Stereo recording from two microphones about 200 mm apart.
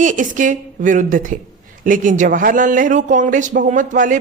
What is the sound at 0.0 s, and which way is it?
A man's voice, 40° right (ahead or behind).